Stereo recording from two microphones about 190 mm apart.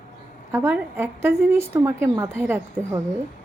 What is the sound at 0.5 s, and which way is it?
A woman's voice, 10° right (ahead or behind).